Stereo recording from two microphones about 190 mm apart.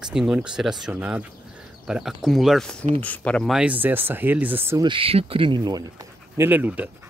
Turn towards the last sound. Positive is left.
turn(degrees=-10)  # may be behind; listen again after turning